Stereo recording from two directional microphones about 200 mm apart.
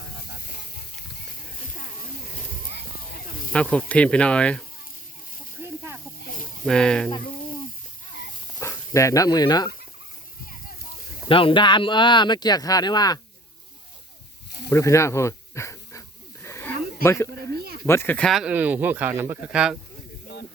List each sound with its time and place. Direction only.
3.5 s speech: 5° left (ahead or behind)
6.7 s speech: 5° left (ahead or behind)
8.5 s speech: 15° left (ahead or behind)
11.3 s speech: 25° left (ahead or behind)
14.7 s snake: 15° left (ahead or behind)
17.6 s a sound: 50° right (ahead or behind)
17.8 s speech: 10° left (ahead or behind)